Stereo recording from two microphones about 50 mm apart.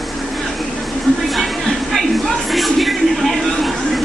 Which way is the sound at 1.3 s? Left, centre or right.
Centre.